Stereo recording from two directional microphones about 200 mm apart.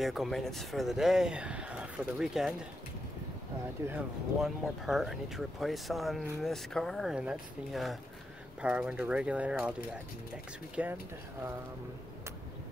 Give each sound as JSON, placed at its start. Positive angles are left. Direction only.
{"t": 0.0, "sound": "speech", "side_deg": 0}
{"t": 3.8, "sound": "speech", "side_deg": -5}
{"t": 10.8, "sound": "speech", "side_deg": -5}